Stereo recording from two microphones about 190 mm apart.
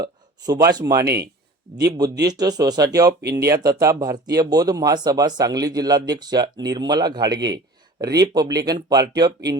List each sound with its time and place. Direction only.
0.0 s a sound: 20° right (ahead or behind)
0.7 s speech: 20° right (ahead or behind)
1.0 s speech: 60° right (ahead or behind)
1.9 s speech: 15° right (ahead or behind)
3.1 s speech: 60° right (ahead or behind)
3.3 s speech: 20° right (ahead or behind)